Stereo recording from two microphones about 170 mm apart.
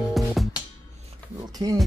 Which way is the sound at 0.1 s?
Centre (ahead or behind).